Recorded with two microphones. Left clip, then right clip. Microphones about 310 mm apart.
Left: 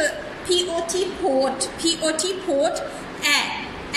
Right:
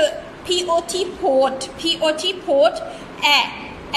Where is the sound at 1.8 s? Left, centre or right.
Centre.